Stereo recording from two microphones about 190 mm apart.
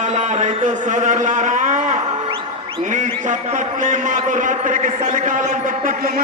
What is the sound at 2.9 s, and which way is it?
A man's voice, 40° right (ahead or behind).